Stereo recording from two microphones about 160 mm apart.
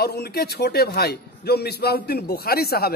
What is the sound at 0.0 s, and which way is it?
A man's voice, 85° left.